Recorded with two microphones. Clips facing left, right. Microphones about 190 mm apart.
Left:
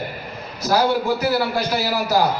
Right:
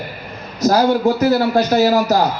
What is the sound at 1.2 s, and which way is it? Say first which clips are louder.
Speech: right 6 dB; 45° right (ahead or behind).